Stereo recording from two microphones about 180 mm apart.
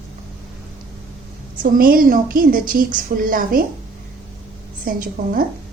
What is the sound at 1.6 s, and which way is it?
A woman's voice, 55° right (ahead or behind).